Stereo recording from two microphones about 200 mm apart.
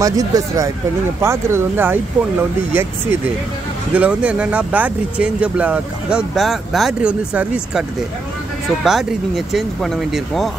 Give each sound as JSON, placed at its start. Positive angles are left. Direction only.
{"t": 0.0, "sound": "speech", "side_deg": -15}
{"t": 8.8, "sound": "speech", "side_deg": 0}